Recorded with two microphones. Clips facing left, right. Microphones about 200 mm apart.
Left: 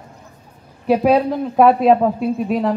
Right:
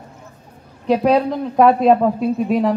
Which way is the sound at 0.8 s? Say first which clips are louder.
Left 1 dB; 5° left (ahead or behind).